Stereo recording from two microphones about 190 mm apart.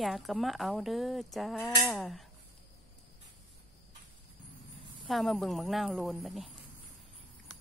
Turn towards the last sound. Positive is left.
turn(degrees=0)  # may be behind; listen again after turning